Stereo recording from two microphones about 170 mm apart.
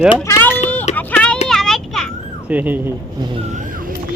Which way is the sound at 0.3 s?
10° left (ahead or behind).